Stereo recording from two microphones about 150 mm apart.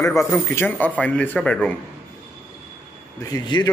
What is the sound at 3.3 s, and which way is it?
Speech, 25° left (ahead or behind).